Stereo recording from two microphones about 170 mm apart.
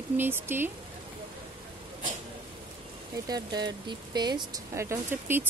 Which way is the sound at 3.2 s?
25° right (ahead or behind).